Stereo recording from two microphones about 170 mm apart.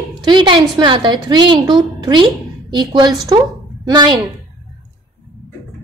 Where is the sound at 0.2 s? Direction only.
25° right (ahead or behind).